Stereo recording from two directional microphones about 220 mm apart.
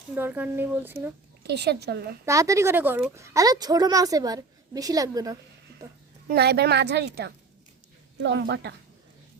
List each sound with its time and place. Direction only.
0.1 s a woman's voice: 10° right (ahead or behind)
1.5 s a woman's voice: 50° right (ahead or behind)
2.2 s a woman's voice: 15° right (ahead or behind)
6.2 s a woman's voice: 45° right (ahead or behind)